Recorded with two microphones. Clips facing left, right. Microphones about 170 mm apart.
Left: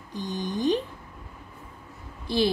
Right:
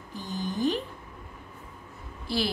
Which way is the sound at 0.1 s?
20° left (ahead or behind).